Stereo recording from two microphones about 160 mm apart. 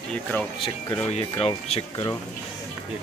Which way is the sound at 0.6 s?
20° left (ahead or behind).